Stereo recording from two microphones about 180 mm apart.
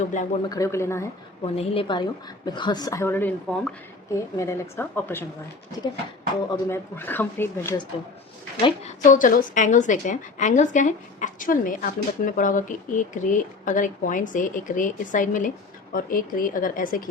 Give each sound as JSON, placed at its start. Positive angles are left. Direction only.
{"t": 0.0, "sound": "a woman's voice", "side_deg": 45}
{"t": 0.4, "sound": "speech", "side_deg": 20}
{"t": 1.5, "sound": "a woman's voice", "side_deg": 30}
{"t": 6.5, "sound": "speech", "side_deg": 10}
{"t": 8.6, "sound": "a woman's voice", "side_deg": 40}